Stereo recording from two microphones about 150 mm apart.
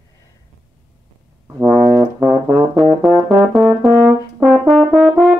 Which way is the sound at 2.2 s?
30° right (ahead or behind).